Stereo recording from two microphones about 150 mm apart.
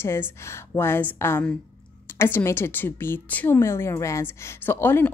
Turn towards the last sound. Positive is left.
turn(degrees=15)  # may be behind; listen again after turning